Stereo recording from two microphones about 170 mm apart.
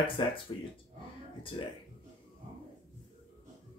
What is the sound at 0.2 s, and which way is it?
Speech, 30° left (ahead or behind).